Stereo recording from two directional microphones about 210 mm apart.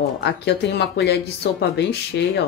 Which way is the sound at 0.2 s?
55° left (ahead or behind).